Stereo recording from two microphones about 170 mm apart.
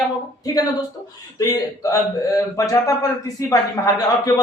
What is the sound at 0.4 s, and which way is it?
A man's voice, 20° left (ahead or behind).